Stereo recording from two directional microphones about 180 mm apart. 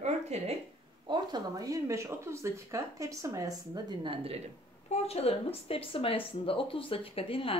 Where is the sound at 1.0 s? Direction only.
25° right (ahead or behind).